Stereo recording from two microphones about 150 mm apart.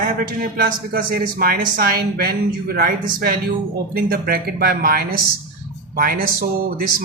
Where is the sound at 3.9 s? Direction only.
85° right.